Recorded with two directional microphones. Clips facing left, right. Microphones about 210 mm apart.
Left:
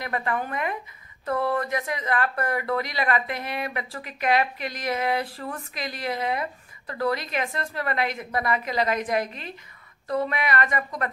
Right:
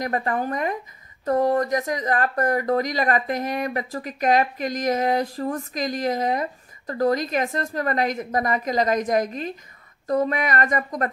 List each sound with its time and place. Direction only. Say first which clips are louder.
0.0 s speech: right 4 dB; 40° right (ahead or behind)